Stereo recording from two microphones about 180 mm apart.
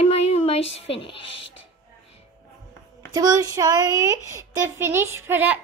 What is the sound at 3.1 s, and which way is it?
A woman's voice, 20° right (ahead or behind).